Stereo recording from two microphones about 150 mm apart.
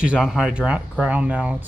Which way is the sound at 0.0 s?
5° right (ahead or behind).